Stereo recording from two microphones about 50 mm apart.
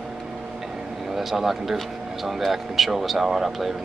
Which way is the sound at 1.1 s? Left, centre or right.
Centre.